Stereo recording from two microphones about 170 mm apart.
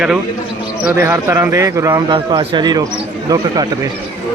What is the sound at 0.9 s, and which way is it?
Speech, 15° right (ahead or behind).